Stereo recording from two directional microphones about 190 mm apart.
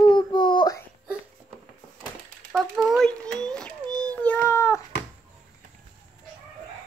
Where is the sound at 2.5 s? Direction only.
Centre (ahead or behind); by 4.8 s 15° left (ahead or behind).